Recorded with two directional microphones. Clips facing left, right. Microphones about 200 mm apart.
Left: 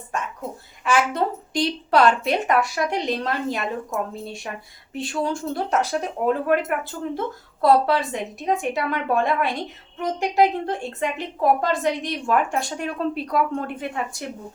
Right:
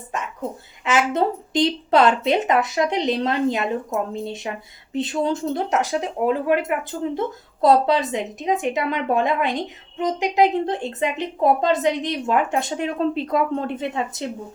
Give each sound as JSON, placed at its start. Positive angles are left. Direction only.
{"t": 0.9, "sound": "a woman's voice", "side_deg": -20}
{"t": 4.9, "sound": "a woman's voice", "side_deg": -20}